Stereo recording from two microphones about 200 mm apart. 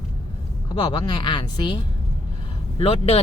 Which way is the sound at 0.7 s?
25° left (ahead or behind).